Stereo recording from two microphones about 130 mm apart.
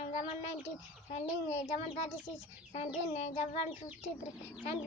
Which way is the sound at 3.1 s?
60° left (ahead or behind).